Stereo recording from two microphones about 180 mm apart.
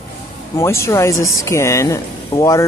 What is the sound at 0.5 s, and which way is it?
A woman's voice, 15° left (ahead or behind).